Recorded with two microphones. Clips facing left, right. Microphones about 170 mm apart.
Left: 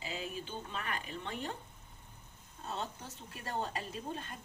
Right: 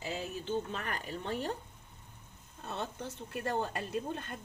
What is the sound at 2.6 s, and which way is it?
Speech, 65° right (ahead or behind).